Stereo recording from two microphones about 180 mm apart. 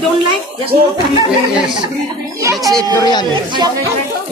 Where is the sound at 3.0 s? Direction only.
25° left (ahead or behind).